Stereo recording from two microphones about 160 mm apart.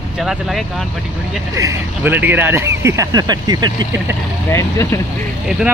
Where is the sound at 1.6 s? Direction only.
15° right (ahead or behind).